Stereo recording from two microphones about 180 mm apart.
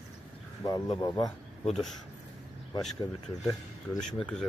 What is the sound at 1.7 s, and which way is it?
Speech, centre (ahead or behind).